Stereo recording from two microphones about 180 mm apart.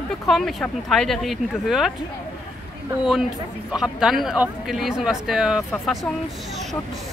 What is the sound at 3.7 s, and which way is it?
Speech, 5° right (ahead or behind).